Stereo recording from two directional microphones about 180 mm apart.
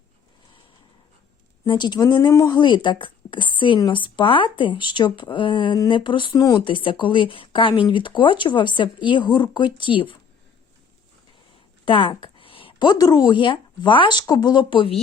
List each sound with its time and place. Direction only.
1.6 s speech: 25° left (ahead or behind)
11.9 s speech: 30° left (ahead or behind)